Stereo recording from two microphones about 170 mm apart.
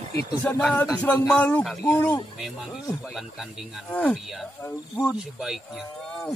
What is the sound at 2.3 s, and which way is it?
Speech, centre (ahead or behind).